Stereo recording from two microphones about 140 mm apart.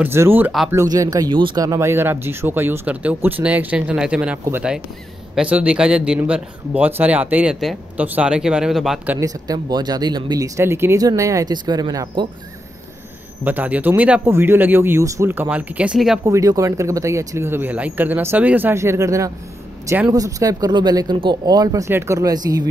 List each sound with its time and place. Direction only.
0.0 s speech: 15° right (ahead or behind)
9.2 s speech: 30° right (ahead or behind)
13.4 s speech: 15° right (ahead or behind)
16.3 s speech: 25° right (ahead or behind)